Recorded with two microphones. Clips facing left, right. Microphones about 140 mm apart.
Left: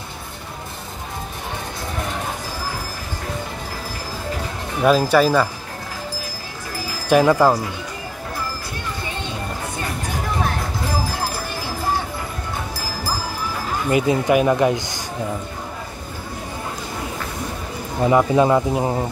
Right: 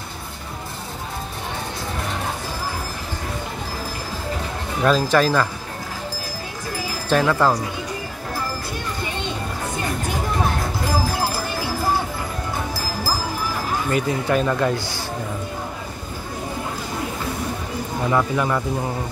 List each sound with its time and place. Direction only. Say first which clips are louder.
4.8 s a man's voice: left 3 dB; 10° left (ahead or behind)
7.1 s a man's voice: left 4 dB; 15° left (ahead or behind)
13.8 s a man's voice: left 6 dB; 20° left (ahead or behind)
18.0 s speech: left 6 dB; 25° left (ahead or behind)